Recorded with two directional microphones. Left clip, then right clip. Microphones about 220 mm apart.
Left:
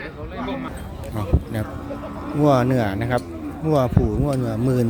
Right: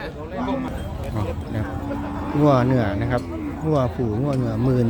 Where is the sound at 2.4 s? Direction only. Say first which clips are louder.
Left 1 dB; 10° left (ahead or behind).